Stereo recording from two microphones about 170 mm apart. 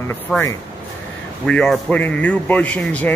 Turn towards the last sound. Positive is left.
turn(degrees=10)  # may be behind; listen again after turning